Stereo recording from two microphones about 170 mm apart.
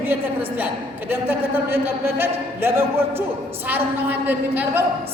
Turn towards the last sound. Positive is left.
turn(degrees=-10)  # may be behind; listen again after turning